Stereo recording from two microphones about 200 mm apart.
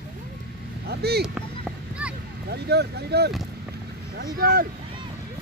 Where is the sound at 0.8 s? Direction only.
55° right (ahead or behind).